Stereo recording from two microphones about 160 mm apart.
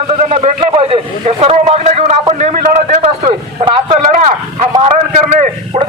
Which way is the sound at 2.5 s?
45° right (ahead or behind).